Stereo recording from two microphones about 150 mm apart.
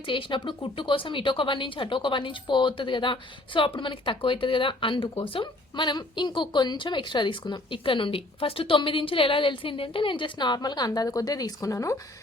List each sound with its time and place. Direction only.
0.0 s speech: 35° left (ahead or behind)